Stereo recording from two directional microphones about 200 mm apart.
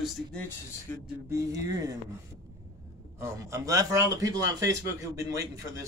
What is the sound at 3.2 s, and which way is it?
A man's voice, 15° right (ahead or behind).